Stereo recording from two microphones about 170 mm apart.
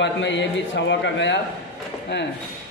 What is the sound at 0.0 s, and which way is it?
A man's voice, 90° left.